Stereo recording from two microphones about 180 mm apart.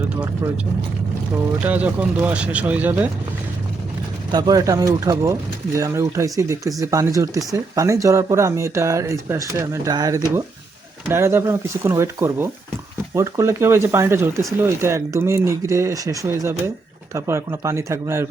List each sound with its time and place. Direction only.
1.6 s speech: 10° right (ahead or behind)
4.3 s speech: 20° right (ahead or behind)